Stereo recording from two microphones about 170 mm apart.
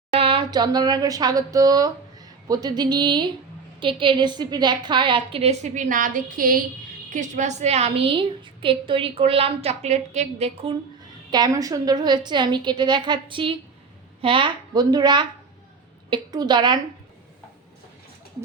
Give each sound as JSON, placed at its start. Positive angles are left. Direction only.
{"t": 0.1, "sound": "a woman's voice", "side_deg": -30}
{"t": 7.1, "sound": "a woman's voice", "side_deg": -45}
{"t": 11.3, "sound": "a woman's voice", "side_deg": -25}